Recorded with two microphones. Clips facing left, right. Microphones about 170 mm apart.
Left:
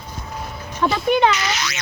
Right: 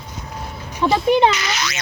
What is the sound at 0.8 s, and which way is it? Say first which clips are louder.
Speech: right 2 dB; 25° right (ahead or behind).